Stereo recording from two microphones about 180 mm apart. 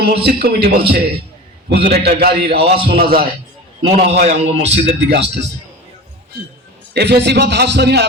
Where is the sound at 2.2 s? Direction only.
60° right (ahead or behind).